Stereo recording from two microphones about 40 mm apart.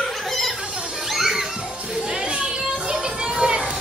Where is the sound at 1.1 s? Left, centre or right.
Centre.